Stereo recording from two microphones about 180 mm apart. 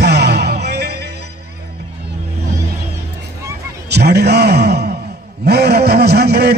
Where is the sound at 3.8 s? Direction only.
65° right (ahead or behind).